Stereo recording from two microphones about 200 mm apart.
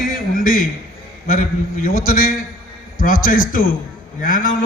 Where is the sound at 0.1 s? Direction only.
45° left (ahead or behind).